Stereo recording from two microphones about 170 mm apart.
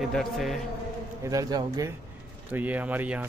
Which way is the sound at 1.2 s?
20° right (ahead or behind).